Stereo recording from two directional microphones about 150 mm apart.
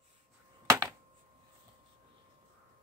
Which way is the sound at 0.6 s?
25° right (ahead or behind).